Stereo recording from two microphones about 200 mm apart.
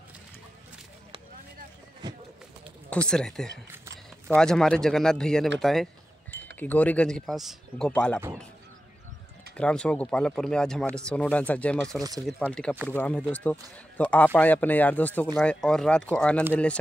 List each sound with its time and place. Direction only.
2.0 s run: 20° right (ahead or behind)
2.9 s speech: 5° left (ahead or behind)
3.7 s a sound: 10° right (ahead or behind)
4.4 s speech: 5° left (ahead or behind)
9.6 s a man's voice: 5° left (ahead or behind)